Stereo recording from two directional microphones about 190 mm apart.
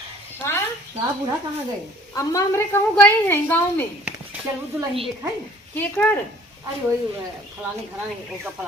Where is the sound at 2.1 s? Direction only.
15° left (ahead or behind).